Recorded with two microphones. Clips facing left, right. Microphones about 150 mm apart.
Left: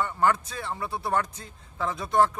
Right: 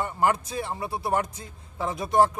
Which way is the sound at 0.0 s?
20° right (ahead or behind).